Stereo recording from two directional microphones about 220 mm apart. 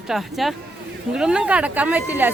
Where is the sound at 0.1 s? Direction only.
Centre (ahead or behind).